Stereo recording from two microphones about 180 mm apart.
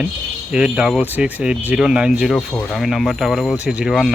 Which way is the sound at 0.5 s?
5° right (ahead or behind).